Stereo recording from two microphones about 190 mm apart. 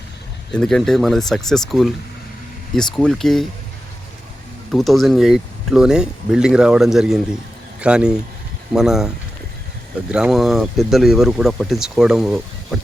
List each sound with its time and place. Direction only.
0.5 s speech: 5° left (ahead or behind)
4.7 s speech: centre (ahead or behind)
10.1 s speech: 5° right (ahead or behind)